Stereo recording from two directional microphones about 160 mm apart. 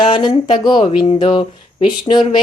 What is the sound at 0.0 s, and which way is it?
Speech, 30° left (ahead or behind).